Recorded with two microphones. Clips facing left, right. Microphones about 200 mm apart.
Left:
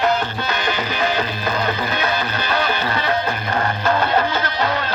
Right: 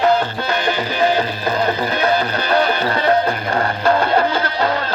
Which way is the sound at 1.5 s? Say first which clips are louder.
Right 5 dB; 35° right (ahead or behind).